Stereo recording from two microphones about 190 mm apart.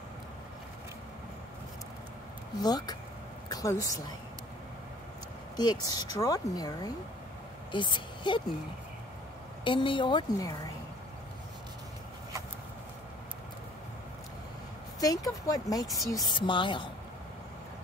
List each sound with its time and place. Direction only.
2.6 s speech: 20° left (ahead or behind)
5.6 s a woman's voice: 20° left (ahead or behind)
9.7 s speech: 25° left (ahead or behind)
15.4 s speech: 20° left (ahead or behind)